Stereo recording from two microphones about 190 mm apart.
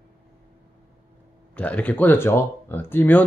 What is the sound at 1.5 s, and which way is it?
Speech, 5° left (ahead or behind).